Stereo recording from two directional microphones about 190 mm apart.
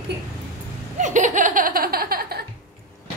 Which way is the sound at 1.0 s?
40° right (ahead or behind).